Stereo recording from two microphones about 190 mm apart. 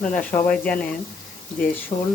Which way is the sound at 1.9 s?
35° left (ahead or behind).